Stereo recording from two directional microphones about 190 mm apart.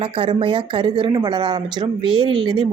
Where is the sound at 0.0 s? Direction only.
30° right (ahead or behind).